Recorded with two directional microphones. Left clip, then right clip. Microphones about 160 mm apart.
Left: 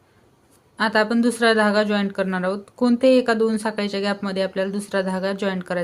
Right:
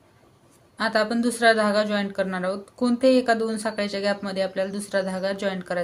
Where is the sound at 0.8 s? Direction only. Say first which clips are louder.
Left 3 dB; 40° left (ahead or behind).